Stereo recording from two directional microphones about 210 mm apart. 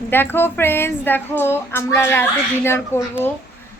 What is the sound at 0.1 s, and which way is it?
Speech, 10° left (ahead or behind).